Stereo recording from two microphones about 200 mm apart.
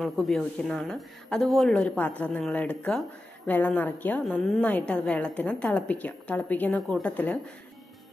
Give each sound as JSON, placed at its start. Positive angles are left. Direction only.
{"t": 0.0, "sound": "a woman's voice", "side_deg": 0}